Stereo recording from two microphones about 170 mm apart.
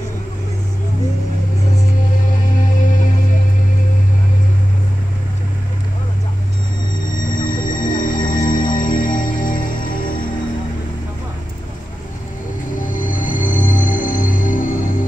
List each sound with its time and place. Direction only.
7.3 s music: 50° left (ahead or behind)
12.7 s music: 50° left (ahead or behind)